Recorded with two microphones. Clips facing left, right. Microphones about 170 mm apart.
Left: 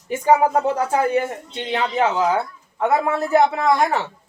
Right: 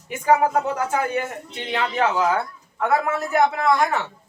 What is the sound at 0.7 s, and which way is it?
A woman's voice, 30° left (ahead or behind).